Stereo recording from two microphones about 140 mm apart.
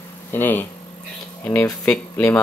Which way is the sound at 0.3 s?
15° left (ahead or behind).